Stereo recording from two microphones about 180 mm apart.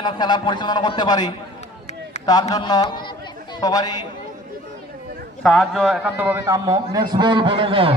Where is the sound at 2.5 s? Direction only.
20° left (ahead or behind).